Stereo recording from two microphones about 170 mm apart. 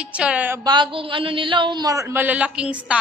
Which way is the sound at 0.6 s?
25° right (ahead or behind).